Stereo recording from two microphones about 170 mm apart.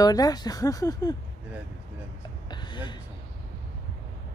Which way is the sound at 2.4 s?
25° left (ahead or behind).